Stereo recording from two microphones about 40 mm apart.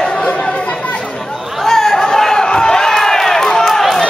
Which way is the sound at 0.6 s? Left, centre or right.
Left.